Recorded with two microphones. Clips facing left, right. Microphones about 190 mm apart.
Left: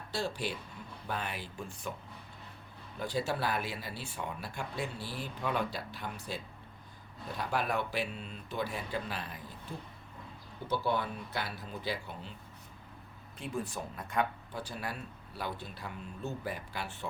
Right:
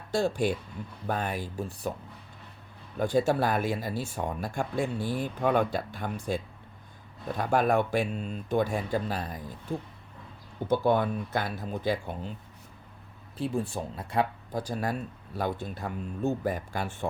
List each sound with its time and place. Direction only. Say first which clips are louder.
0.1 s speech: right 9 dB; 50° right (ahead or behind)
3.0 s speech: right 9 dB; 50° right (ahead or behind)
10.7 s speech: right 8 dB; 50° right (ahead or behind)
13.4 s speech: right 7 dB; 30° right (ahead or behind); by 17.1 s 50° right (ahead or behind)